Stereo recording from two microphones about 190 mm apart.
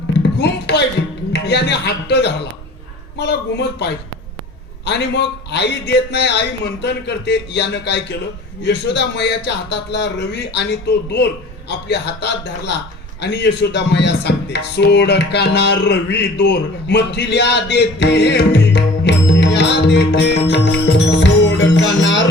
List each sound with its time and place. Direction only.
0.2 s music: 60° left (ahead or behind)
1.3 s speech: 60° left (ahead or behind)
4.9 s speech: 65° left (ahead or behind)
20.5 s music: 65° left (ahead or behind)